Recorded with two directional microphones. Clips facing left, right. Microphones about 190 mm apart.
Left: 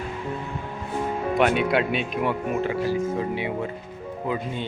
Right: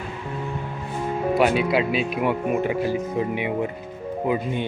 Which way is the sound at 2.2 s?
15° right (ahead or behind).